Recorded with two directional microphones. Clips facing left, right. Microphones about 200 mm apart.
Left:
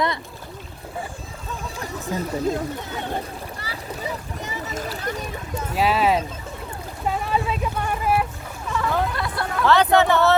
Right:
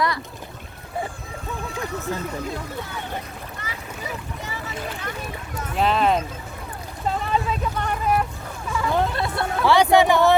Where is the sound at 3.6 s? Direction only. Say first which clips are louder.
Left 2 dB; 35° left (ahead or behind).